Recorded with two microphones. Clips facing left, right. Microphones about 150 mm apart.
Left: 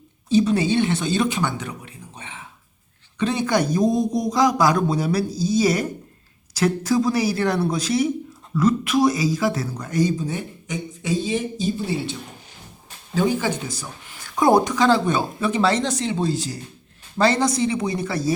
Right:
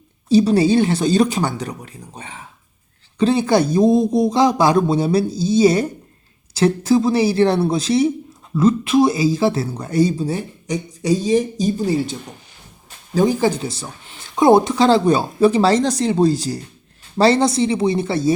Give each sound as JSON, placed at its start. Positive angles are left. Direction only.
{"t": 0.3, "sound": "speech", "side_deg": -35}
{"t": 13.1, "sound": "speech", "side_deg": -35}